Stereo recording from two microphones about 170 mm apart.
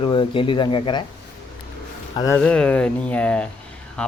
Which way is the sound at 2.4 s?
5° left (ahead or behind).